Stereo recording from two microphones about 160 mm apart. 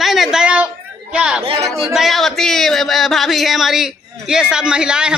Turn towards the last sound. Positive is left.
turn(degrees=-5)  # may be behind; listen again after turning